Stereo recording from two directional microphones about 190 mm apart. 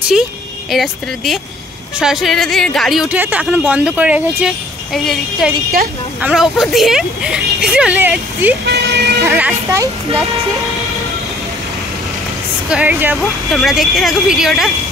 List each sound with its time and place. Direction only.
0.7 s speech: centre (ahead or behind)
8.6 s vehicle: 60° right (ahead or behind)
9.2 s speech: 10° right (ahead or behind)
12.6 s speech: 5° right (ahead or behind)